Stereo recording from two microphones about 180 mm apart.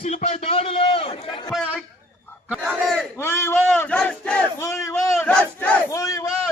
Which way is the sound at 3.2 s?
15° left (ahead or behind).